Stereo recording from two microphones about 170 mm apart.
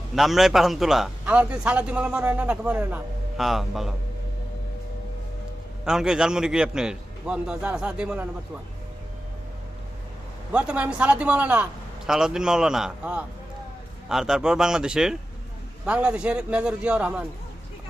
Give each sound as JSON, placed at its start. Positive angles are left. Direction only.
{"t": 0.2, "sound": "a man's voice", "side_deg": 0}
{"t": 5.8, "sound": "a man's voice", "side_deg": -5}
{"t": 10.5, "sound": "a man's voice", "side_deg": -5}